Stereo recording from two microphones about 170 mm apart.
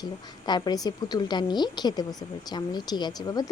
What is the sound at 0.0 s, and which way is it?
A woman's voice, 25° left (ahead or behind).